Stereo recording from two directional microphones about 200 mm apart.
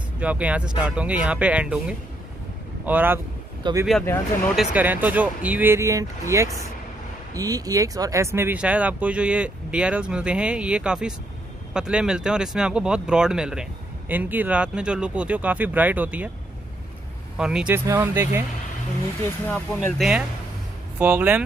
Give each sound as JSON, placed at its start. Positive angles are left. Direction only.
{"t": 0.2, "sound": "speech", "side_deg": -5}
{"t": 3.6, "sound": "speech", "side_deg": -20}
{"t": 4.0, "sound": "speech", "side_deg": 10}
{"t": 4.6, "sound": "speech", "side_deg": -10}
{"t": 17.4, "sound": "speech", "side_deg": -5}
{"t": 19.5, "sound": "speech", "side_deg": 0}